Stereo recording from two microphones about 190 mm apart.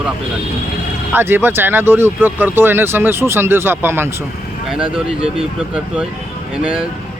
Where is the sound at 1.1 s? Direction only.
10° right (ahead or behind).